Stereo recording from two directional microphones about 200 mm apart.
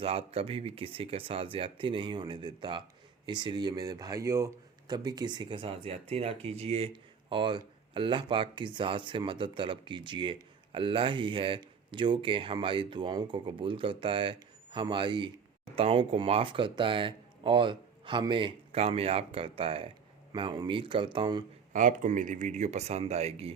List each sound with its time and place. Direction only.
0.0 s speech: 30° right (ahead or behind)
21.7 s speech: 40° right (ahead or behind)